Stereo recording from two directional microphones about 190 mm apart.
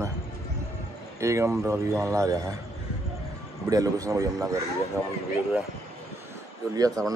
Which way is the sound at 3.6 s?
20° right (ahead or behind).